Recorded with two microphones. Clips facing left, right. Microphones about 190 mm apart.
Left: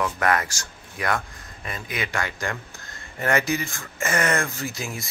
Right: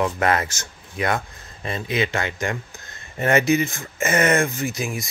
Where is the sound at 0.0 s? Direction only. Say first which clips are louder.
Right 2 dB; 25° right (ahead or behind).